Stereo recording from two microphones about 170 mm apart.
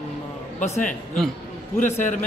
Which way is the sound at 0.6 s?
45° left (ahead or behind).